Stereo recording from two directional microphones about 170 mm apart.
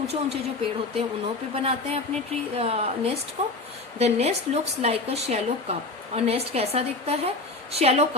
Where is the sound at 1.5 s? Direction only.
35° right (ahead or behind).